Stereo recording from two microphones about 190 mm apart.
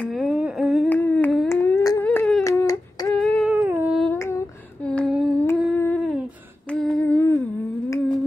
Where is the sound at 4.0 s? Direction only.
10° left (ahead or behind).